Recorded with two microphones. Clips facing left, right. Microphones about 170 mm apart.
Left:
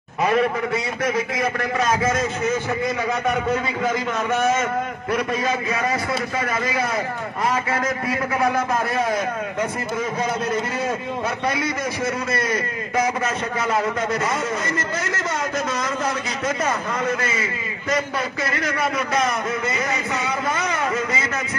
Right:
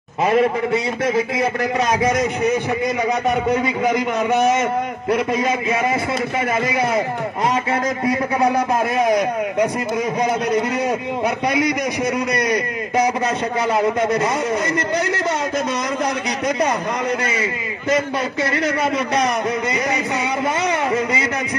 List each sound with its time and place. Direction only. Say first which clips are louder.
0.2 s a man's voice: right 3 dB; 25° right (ahead or behind)
7.7 s a man's voice: right 4 dB; 25° right (ahead or behind)
11.4 s a man's voice: right 5 dB; 20° right (ahead or behind)
13.7 s a man's voice: right 5 dB; 20° right (ahead or behind)
17.4 s a man's voice: right 4 dB; 25° right (ahead or behind)
20.6 s a man's voice: right 4 dB; 20° right (ahead or behind)